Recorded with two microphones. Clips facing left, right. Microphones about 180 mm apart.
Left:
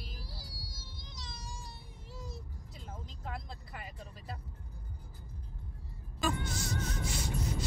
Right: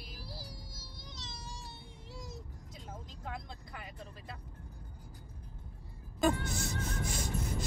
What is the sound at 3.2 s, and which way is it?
Speech, centre (ahead or behind).